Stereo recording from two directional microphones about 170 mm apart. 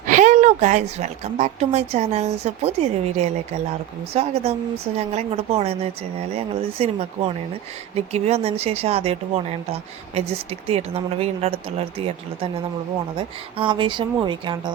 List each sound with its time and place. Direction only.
0.0 s speech: 45° right (ahead or behind)
7.9 s speech: 40° right (ahead or behind)